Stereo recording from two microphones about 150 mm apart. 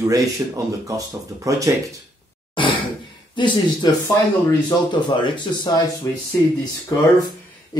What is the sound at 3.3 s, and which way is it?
Speech, 30° left (ahead or behind).